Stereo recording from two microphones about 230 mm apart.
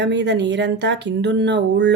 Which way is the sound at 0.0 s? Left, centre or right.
Right.